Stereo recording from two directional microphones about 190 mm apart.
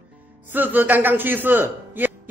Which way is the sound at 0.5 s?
10° right (ahead or behind).